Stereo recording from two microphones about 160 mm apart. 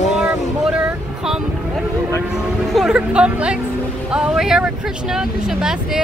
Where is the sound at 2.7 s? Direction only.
5° right (ahead or behind).